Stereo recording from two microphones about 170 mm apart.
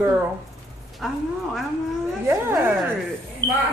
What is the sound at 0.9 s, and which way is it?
Speech, centre (ahead or behind).